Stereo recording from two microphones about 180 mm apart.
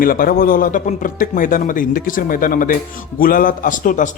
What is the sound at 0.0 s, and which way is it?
Speech, 55° left (ahead or behind).